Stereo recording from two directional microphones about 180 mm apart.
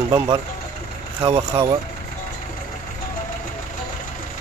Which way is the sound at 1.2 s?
20° right (ahead or behind).